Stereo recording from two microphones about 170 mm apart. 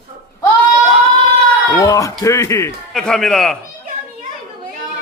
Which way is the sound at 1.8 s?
20° left (ahead or behind).